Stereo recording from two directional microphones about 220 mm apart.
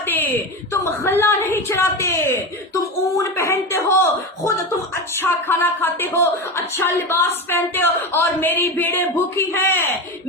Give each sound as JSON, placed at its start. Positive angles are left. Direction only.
{"t": 0.1, "sound": "a woman's voice", "side_deg": 10}
{"t": 3.2, "sound": "a sound", "side_deg": 15}
{"t": 5.2, "sound": "a woman's voice", "side_deg": 10}